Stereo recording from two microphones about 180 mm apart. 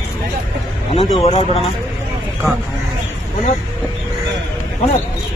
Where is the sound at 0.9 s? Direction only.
35° left (ahead or behind).